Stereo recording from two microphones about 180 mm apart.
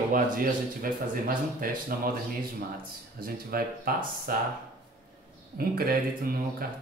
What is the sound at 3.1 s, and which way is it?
Speech, 55° right (ahead or behind).